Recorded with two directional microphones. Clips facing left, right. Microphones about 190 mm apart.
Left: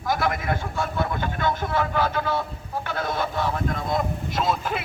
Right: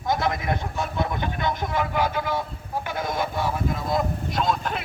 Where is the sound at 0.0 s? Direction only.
20° right (ahead or behind).